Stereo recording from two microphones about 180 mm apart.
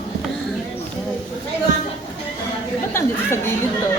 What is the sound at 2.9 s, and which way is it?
Chatter, 15° left (ahead or behind).